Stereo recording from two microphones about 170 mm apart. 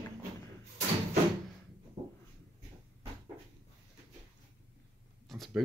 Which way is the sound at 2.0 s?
40° right (ahead or behind).